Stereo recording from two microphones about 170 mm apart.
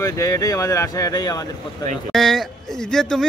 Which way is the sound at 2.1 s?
Centre (ahead or behind).